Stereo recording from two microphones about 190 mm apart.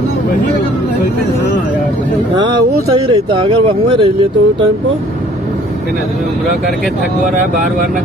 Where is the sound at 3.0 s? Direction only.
25° right (ahead or behind).